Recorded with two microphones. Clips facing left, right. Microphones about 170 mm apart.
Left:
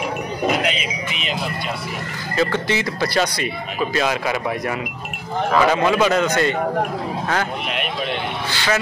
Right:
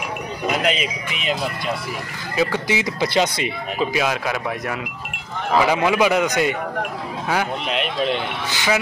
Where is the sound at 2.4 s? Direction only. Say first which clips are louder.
Left 1 dB; 10° right (ahead or behind).